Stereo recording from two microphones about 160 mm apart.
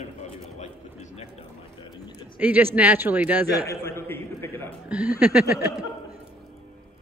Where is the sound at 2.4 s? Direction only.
10° right (ahead or behind).